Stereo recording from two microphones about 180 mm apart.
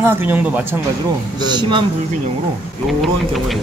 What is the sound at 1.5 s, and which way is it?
Speech, 25° right (ahead or behind).